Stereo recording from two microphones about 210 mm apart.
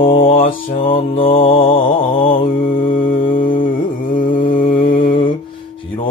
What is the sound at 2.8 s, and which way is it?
Humming, 40° left (ahead or behind).